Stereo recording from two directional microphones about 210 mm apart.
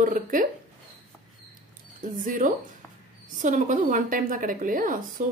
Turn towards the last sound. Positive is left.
turn(degrees=-40)  # may be behind; listen again after turning